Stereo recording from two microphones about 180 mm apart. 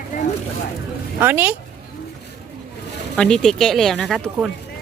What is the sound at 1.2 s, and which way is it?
Speech, 10° right (ahead or behind).